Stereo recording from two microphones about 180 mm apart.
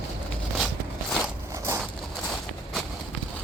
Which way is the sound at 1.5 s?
15° right (ahead or behind).